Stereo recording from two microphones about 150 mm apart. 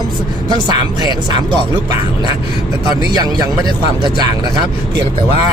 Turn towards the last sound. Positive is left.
turn(degrees=-25)  # may be behind; listen again after turning